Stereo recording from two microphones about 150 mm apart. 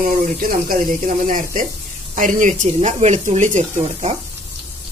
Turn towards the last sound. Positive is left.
turn(degrees=-50)  # may be behind; listen again after turning